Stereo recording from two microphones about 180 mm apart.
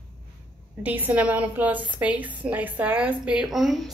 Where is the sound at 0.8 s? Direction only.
10° right (ahead or behind).